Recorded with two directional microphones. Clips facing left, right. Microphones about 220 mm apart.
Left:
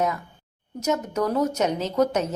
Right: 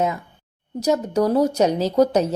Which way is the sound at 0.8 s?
35° right (ahead or behind).